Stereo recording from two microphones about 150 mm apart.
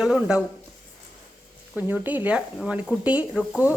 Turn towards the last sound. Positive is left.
turn(degrees=-10)  # may be behind; listen again after turning